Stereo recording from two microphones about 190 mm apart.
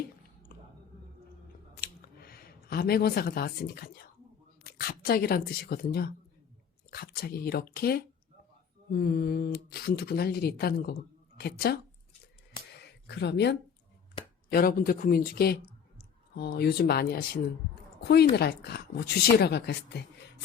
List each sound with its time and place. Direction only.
1.7 s a sound: 55° left (ahead or behind)
4.6 s speech: 55° left (ahead or behind)
12.8 s speech: 60° left (ahead or behind)
14.5 s speech: 50° left (ahead or behind)